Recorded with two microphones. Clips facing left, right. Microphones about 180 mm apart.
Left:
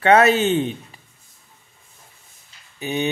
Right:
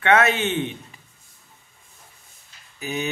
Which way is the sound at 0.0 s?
35° left (ahead or behind).